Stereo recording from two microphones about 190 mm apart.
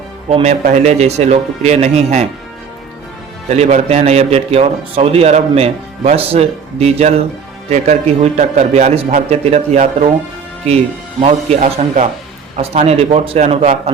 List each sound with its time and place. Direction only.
0.3 s a man's voice: 35° right (ahead or behind)
3.5 s a man's voice: 35° right (ahead or behind)
11.2 s a man's voice: 35° right (ahead or behind)